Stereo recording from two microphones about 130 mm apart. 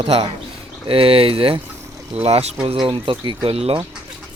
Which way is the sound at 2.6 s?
40° right (ahead or behind).